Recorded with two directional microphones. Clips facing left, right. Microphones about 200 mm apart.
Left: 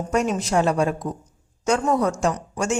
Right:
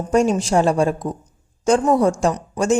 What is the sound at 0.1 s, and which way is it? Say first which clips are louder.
A woman's voice: right 6 dB; 30° right (ahead or behind).